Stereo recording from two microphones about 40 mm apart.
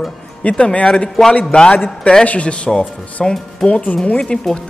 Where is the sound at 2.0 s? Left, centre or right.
Left.